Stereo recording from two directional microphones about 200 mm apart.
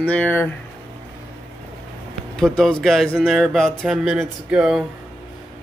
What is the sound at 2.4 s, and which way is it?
A man's voice, centre (ahead or behind).